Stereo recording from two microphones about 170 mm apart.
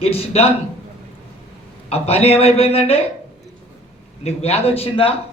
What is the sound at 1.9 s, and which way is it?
A man's voice, 35° left (ahead or behind).